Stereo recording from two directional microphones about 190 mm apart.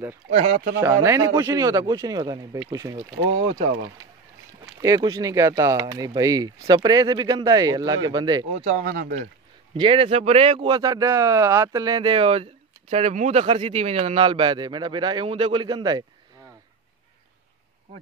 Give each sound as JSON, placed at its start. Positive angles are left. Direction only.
{"t": 0.4, "sound": "speech", "side_deg": -40}
{"t": 0.7, "sound": "a man's voice", "side_deg": -15}
{"t": 4.8, "sound": "speech", "side_deg": -20}
{"t": 8.6, "sound": "speech", "side_deg": -50}
{"t": 9.8, "sound": "speech", "side_deg": -30}